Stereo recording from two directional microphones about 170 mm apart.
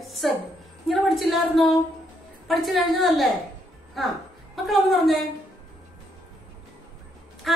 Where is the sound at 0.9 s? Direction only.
Centre (ahead or behind).